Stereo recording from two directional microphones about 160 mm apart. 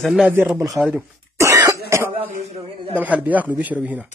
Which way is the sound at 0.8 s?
15° right (ahead or behind).